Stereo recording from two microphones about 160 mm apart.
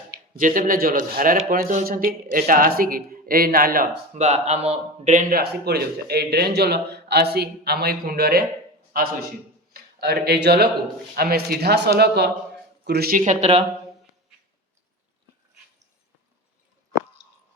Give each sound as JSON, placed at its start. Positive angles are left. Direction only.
{"t": 0.3, "sound": "speech", "side_deg": -55}
{"t": 4.1, "sound": "speech", "side_deg": -45}
{"t": 5.3, "sound": "a man's voice", "side_deg": -85}
{"t": 9.7, "sound": "speech", "side_deg": -85}
{"t": 11.1, "sound": "a man's voice", "side_deg": -75}